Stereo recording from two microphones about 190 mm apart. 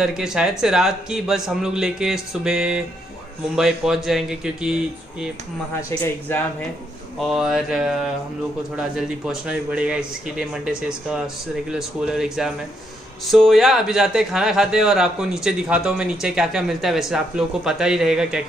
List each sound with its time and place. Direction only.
0.0 s a man's voice: 5° right (ahead or behind)
5.8 s speech: 15° left (ahead or behind)
7.2 s a man's voice: centre (ahead or behind)